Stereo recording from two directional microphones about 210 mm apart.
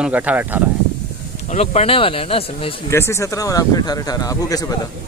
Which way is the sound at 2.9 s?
15° left (ahead or behind).